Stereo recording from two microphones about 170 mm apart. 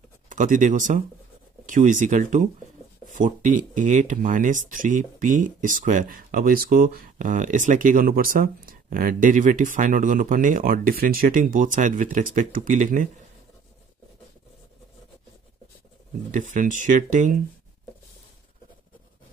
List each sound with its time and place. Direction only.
0.3 s speech: 50° right (ahead or behind)
16.3 s speech: 50° right (ahead or behind)